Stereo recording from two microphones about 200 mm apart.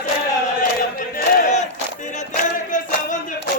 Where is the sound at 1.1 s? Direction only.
50° left (ahead or behind).